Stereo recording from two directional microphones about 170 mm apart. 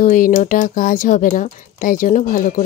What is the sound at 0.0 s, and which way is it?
Speech, 50° left (ahead or behind).